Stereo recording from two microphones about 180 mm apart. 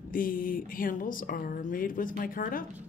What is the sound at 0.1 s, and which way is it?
Speech, 50° left (ahead or behind).